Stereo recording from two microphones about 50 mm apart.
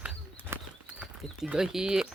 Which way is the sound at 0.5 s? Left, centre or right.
Right.